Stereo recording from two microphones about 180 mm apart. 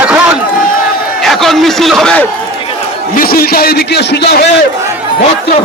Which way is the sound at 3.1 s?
55° left (ahead or behind).